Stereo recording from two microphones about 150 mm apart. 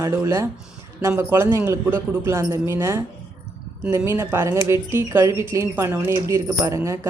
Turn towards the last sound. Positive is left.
turn(degrees=-20)  # may be behind; listen again after turning